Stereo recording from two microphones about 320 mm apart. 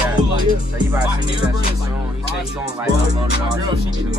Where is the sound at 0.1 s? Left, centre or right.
Centre.